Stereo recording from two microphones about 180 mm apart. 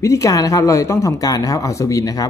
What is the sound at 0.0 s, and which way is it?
Speech, 15° left (ahead or behind).